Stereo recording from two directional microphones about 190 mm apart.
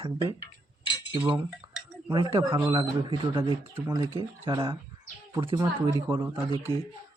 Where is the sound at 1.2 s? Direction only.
10° right (ahead or behind).